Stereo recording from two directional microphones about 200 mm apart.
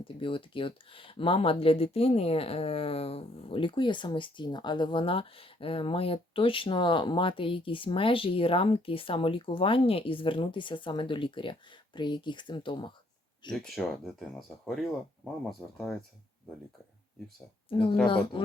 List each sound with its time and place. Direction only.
0.0 s speech: 25° left (ahead or behind)
13.5 s speech: centre (ahead or behind)
18.3 s speech: 25° left (ahead or behind)